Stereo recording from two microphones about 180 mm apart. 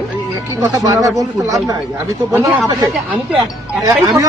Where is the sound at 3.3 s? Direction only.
30° right (ahead or behind).